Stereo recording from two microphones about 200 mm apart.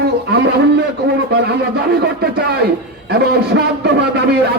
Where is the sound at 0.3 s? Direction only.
55° right (ahead or behind).